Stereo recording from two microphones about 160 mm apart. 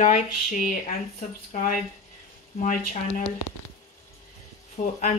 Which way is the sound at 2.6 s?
50° left (ahead or behind).